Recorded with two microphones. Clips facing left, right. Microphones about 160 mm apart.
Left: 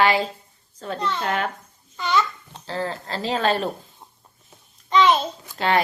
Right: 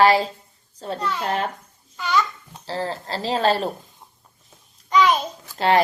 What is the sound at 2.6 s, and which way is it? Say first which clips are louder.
Speech: right 1 dB; 35° right (ahead or behind).